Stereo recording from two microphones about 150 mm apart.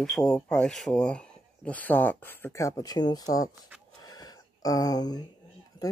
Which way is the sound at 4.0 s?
25° left (ahead or behind).